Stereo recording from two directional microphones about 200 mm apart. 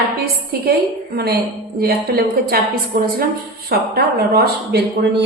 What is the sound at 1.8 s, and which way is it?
A woman's voice, 50° right (ahead or behind).